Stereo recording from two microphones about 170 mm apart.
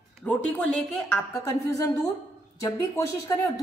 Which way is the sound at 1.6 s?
20° left (ahead or behind).